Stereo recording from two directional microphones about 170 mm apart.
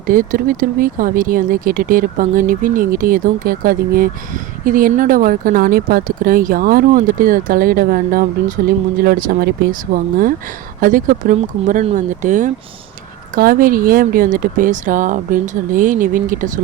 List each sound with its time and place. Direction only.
0.1 s speech: 55° right (ahead or behind)